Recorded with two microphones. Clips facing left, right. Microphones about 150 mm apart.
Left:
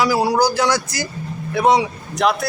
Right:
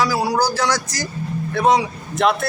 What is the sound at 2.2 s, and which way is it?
Speech, centre (ahead or behind).